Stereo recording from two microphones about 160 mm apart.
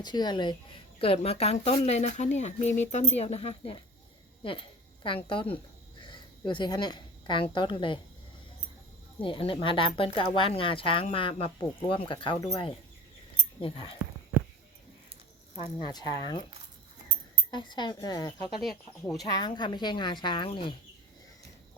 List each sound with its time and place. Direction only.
0.0 s a woman's voice: 25° left (ahead or behind)
6.0 s cricket: 30° left (ahead or behind)
6.5 s a woman's voice: 30° left (ahead or behind)
9.2 s a woman's voice: 30° left (ahead or behind)
15.8 s speech: 25° left (ahead or behind)
17.5 s speech: 30° left (ahead or behind)